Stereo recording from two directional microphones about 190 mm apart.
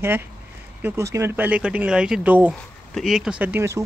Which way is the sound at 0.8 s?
15° right (ahead or behind).